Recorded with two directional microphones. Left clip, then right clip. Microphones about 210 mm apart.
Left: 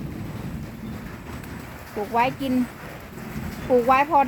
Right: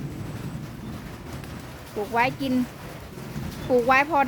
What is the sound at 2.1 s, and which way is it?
Speech, 5° left (ahead or behind).